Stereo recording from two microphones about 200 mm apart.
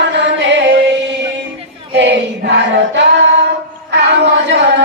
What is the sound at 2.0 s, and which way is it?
Female singing, 60° right (ahead or behind).